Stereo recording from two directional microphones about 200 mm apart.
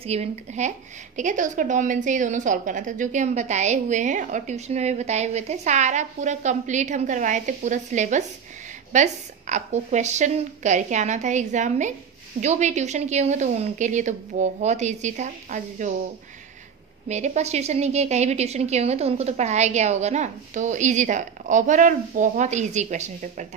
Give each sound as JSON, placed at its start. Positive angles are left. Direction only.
{"t": 0.0, "sound": "a woman's voice", "side_deg": -30}
{"t": 17.1, "sound": "a woman's voice", "side_deg": -35}